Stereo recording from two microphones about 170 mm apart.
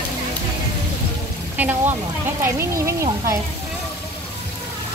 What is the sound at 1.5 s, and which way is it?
Speech, 10° right (ahead or behind).